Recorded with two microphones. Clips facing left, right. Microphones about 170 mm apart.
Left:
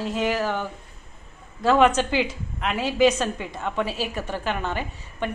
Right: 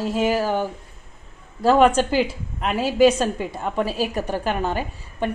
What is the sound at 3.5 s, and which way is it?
A woman's voice, 40° right (ahead or behind).